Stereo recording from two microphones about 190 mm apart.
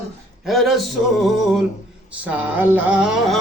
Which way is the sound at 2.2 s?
10° right (ahead or behind).